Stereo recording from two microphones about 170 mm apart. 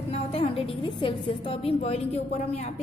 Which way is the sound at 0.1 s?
35° left (ahead or behind).